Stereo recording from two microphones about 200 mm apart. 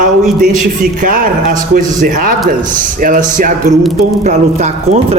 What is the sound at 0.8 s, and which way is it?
A man's voice, 45° right (ahead or behind).